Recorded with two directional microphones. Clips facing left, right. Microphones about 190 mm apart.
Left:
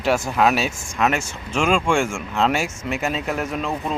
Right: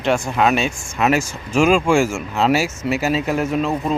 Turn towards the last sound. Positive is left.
turn(degrees=0)  # may be behind; listen again after turning